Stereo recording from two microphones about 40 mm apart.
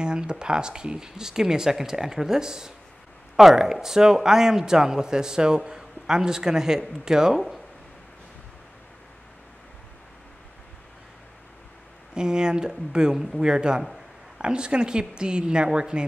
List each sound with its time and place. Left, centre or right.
0.0 s a man's voice: right
7.3 s speech: centre
12.1 s speech: centre